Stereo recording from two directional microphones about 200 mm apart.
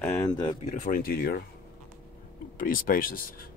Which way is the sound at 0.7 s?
40° left (ahead or behind).